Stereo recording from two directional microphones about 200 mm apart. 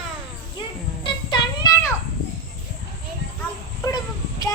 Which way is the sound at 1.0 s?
25° left (ahead or behind).